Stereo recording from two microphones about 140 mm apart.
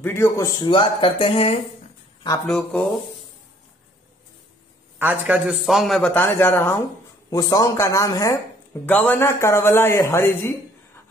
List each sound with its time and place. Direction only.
0.0 s speech: 15° left (ahead or behind)
0.6 s speech: 35° left (ahead or behind)
2.4 s a man's voice: 5° left (ahead or behind)
4.9 s a man's voice: 10° right (ahead or behind)
6.1 s speech: 15° left (ahead or behind)
7.2 s speech: 25° left (ahead or behind)
8.8 s speech: 10° left (ahead or behind)